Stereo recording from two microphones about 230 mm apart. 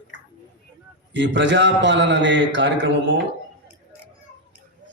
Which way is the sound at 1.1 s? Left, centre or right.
Right.